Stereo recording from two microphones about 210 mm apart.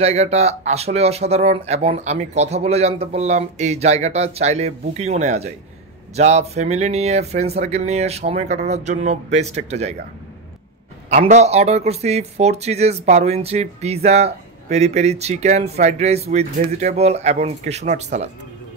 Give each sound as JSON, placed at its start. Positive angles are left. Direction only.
{"t": 0.0, "sound": "speech", "side_deg": -30}
{"t": 11.1, "sound": "speech", "side_deg": -35}